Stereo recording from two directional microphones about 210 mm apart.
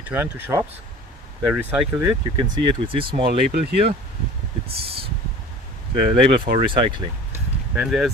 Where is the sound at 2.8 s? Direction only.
25° right (ahead or behind).